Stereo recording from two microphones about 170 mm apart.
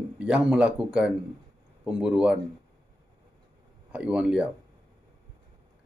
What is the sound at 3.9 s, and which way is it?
Speech, 5° right (ahead or behind).